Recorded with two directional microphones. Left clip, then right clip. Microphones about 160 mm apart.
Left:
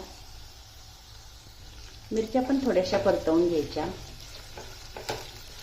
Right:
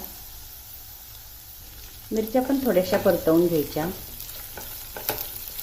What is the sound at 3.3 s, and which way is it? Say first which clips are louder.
Speech: right 6 dB; 35° right (ahead or behind).